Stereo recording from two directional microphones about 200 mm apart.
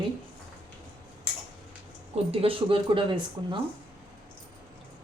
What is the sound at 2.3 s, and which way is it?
Speech, 30° right (ahead or behind).